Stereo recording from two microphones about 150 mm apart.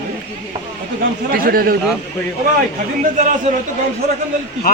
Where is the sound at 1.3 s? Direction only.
80° right.